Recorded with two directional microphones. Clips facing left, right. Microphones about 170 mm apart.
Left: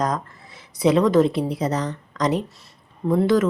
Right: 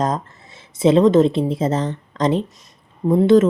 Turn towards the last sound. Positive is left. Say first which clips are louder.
# right 5 dB
turn(degrees=-25)  # may be behind; listen again after turning